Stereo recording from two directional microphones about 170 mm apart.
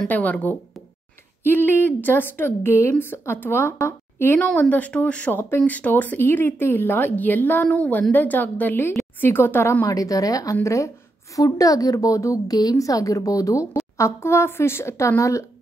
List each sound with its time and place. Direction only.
0.0 s a woman's voice: 10° left (ahead or behind)